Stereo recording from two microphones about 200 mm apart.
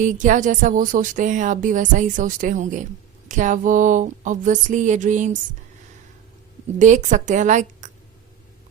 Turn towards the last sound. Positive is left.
turn(degrees=-40)  # may be behind; listen again after turning